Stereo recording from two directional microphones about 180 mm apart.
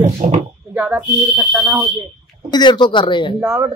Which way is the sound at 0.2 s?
40° right (ahead or behind).